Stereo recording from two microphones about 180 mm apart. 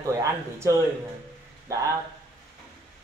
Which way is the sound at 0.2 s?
15° right (ahead or behind).